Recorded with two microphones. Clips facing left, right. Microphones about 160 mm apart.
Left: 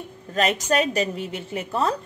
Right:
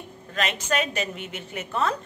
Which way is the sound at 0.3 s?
40° left (ahead or behind).